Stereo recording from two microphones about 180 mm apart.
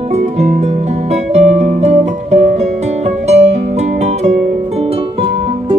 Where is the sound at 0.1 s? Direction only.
40° right (ahead or behind).